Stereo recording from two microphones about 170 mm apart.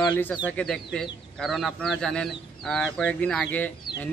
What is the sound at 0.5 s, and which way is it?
Speech, 5° left (ahead or behind).